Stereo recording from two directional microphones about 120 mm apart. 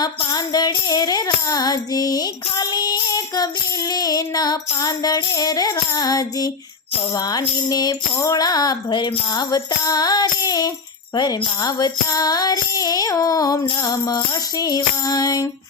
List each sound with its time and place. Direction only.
0.0 s tambourine: 35° left (ahead or behind)
3.9 s music: 30° left (ahead or behind)